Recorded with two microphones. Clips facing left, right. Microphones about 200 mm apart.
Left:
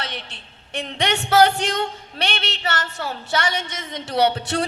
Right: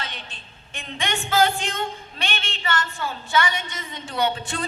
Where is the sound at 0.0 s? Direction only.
70° left (ahead or behind).